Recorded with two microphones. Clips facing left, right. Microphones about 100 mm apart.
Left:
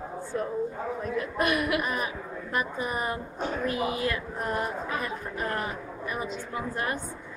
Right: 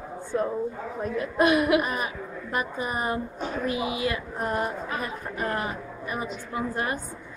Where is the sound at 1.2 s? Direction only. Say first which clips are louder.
Right 7 dB; 25° right (ahead or behind).